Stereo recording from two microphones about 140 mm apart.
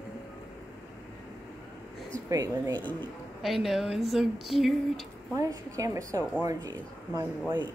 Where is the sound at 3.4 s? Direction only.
Centre (ahead or behind).